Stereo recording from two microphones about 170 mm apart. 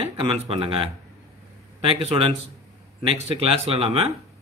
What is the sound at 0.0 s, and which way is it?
Speech, 35° right (ahead or behind).